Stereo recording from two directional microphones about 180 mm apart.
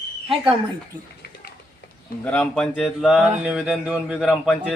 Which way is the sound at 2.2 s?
5° left (ahead or behind).